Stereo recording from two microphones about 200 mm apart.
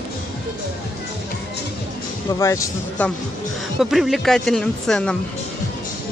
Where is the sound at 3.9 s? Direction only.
Centre (ahead or behind).